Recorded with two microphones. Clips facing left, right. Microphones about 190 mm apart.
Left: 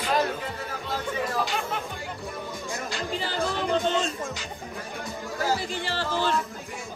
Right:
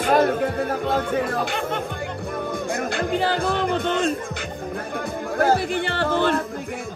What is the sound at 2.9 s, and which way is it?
Speech, 60° right (ahead or behind).